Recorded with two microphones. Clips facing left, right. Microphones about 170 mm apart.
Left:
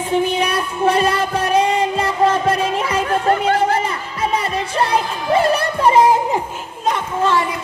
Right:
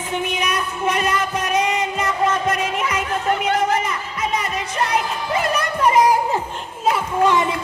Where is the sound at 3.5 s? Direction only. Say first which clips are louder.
Left 2 dB; 30° left (ahead or behind).